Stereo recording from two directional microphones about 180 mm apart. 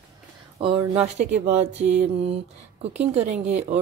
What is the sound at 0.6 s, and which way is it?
Speech, 30° right (ahead or behind).